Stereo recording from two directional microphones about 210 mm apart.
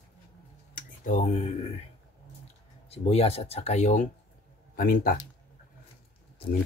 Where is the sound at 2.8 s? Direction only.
30° left (ahead or behind).